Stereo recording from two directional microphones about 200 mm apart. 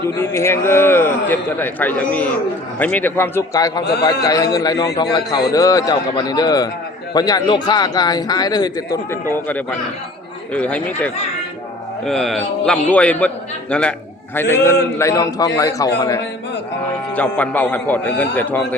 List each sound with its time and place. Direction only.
0.2 s a man's voice: 10° left (ahead or behind)
9.3 s a man's voice: 10° left (ahead or behind)
17.2 s a man's voice: 5° left (ahead or behind)